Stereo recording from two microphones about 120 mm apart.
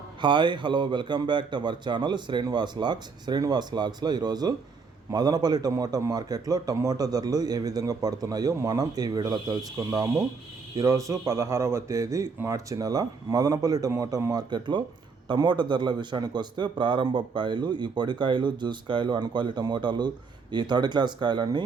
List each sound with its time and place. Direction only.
0.2 s a man's voice: 40° right (ahead or behind)